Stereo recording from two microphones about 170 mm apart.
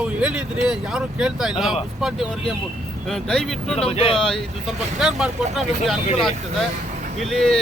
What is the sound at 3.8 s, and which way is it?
Speech, 35° left (ahead or behind).